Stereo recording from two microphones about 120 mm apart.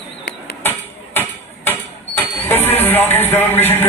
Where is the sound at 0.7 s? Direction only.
20° left (ahead or behind).